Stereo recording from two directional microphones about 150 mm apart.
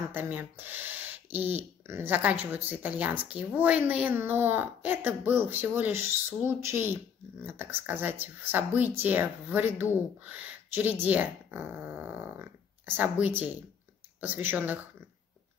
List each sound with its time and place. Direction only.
0.1 s speech: 10° right (ahead or behind)